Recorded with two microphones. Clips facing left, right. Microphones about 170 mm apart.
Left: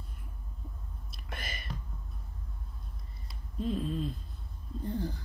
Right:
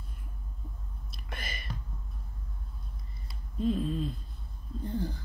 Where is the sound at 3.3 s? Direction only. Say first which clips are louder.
Right 4 dB; centre (ahead or behind).